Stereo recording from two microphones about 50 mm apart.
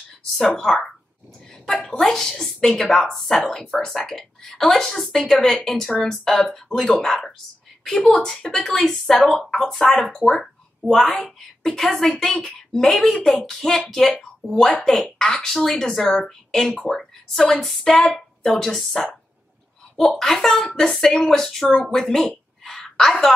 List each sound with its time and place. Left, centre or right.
1.7 s speech: centre
14.7 s speech: centre
21.9 s a sound: centre